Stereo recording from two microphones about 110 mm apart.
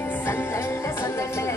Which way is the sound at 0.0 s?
20° left (ahead or behind).